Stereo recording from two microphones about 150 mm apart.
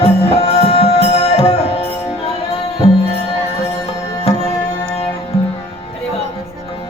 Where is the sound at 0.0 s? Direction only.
40° left (ahead or behind).